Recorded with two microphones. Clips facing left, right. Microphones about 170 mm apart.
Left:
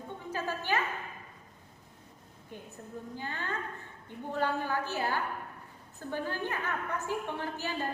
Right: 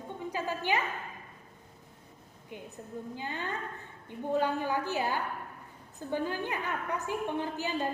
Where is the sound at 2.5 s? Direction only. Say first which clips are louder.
Right 2 dB; 15° right (ahead or behind).